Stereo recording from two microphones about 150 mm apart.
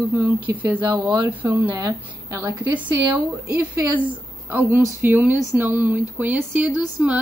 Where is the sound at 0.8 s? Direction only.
15° right (ahead or behind).